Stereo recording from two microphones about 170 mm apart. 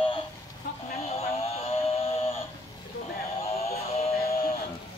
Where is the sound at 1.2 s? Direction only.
35° left (ahead or behind).